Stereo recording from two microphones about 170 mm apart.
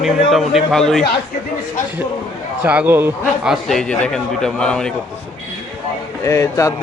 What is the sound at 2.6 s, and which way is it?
Speech, 10° right (ahead or behind).